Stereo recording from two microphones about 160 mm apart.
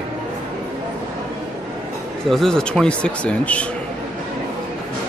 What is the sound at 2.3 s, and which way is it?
Speech, 5° left (ahead or behind).